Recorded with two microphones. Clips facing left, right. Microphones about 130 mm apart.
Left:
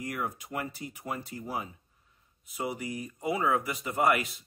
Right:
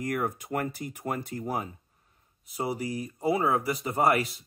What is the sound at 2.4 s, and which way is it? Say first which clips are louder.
Speech: right 3 dB; 35° right (ahead or behind).